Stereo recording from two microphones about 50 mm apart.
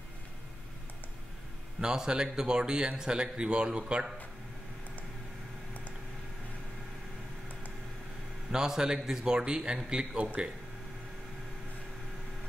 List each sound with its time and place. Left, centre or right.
1.8 s a man's voice: centre
8.5 s a man's voice: centre